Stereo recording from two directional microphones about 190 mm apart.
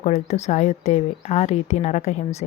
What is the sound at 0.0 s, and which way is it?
Speech, 35° left (ahead or behind).